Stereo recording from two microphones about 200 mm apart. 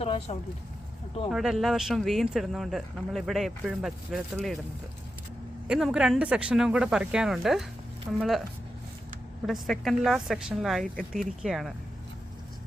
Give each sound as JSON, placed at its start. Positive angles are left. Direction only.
{"t": 0.0, "sound": "a sound", "side_deg": 30}
{"t": 1.3, "sound": "speech", "side_deg": 0}
{"t": 5.6, "sound": "speech", "side_deg": -5}
{"t": 9.5, "sound": "speech", "side_deg": 0}